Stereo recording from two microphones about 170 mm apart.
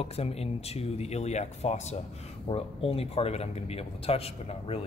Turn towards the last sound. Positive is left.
turn(degrees=35)  # may be behind; listen again after turning